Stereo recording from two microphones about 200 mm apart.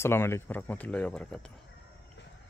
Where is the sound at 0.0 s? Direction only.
10° left (ahead or behind).